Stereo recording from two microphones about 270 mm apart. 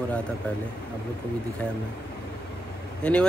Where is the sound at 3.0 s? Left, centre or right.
Centre.